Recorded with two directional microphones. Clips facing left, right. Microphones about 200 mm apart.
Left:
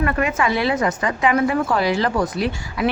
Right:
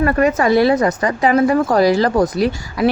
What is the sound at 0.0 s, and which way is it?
A woman's voice, 40° right (ahead or behind).